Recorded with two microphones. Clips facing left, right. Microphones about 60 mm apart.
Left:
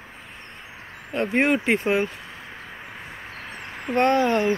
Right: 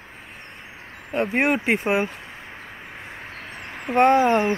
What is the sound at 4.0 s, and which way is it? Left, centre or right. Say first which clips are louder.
Speech: right 3 dB; centre.